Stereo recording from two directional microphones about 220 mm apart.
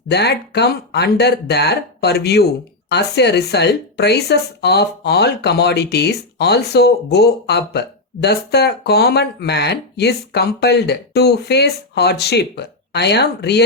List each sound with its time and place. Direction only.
0.1 s speech: 50° left (ahead or behind)